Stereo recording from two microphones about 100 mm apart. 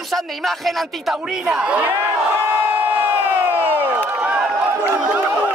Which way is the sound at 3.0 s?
15° right (ahead or behind).